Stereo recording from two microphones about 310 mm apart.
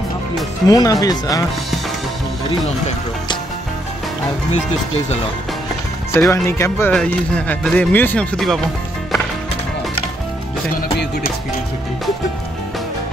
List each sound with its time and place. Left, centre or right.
0.7 s speech: centre
6.1 s speech: centre
10.8 s music: left